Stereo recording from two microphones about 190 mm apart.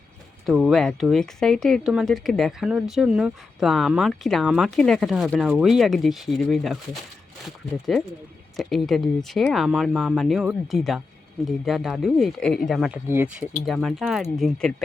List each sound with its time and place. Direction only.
0.4 s speech: centre (ahead or behind)
7.9 s speech: centre (ahead or behind)
13.7 s speech: centre (ahead or behind)